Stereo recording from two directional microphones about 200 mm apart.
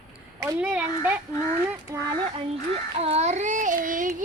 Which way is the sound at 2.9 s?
30° right (ahead or behind).